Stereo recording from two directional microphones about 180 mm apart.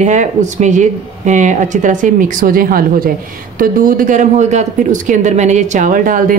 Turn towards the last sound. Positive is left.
turn(degrees=-50)  # may be behind; listen again after turning